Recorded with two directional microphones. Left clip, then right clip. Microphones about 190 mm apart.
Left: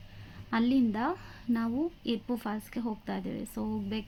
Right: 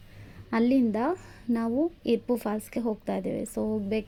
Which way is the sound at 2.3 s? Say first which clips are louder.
Right 6 dB; 20° right (ahead or behind).